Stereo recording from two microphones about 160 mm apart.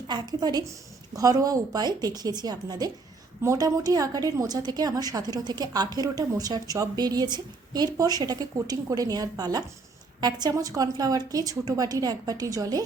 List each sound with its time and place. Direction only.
0.1 s a woman's voice: 25° right (ahead or behind)